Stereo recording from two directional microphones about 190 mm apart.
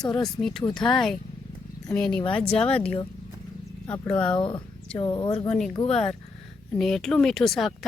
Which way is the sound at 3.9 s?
5° left (ahead or behind).